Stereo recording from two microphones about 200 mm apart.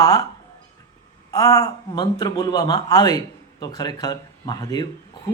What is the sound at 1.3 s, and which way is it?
Speech, 15° left (ahead or behind).